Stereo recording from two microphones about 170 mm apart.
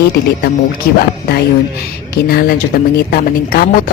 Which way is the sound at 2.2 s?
60° left (ahead or behind).